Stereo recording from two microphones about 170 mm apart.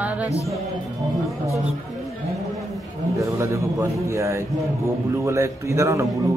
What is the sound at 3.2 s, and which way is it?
A man's voice, 15° right (ahead or behind).